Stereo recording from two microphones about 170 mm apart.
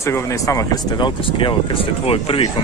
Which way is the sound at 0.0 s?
20° left (ahead or behind).